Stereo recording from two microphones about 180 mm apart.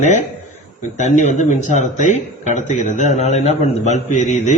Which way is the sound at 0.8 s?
40° left (ahead or behind).